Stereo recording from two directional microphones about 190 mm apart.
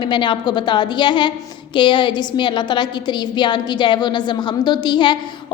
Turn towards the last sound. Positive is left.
turn(degrees=25)  # may be behind; listen again after turning